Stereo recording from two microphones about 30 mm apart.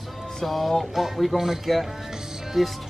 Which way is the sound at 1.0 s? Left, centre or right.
Centre.